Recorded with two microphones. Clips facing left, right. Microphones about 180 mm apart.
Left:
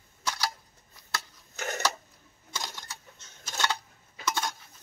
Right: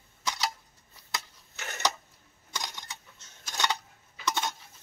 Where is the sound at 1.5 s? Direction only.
45° left (ahead or behind).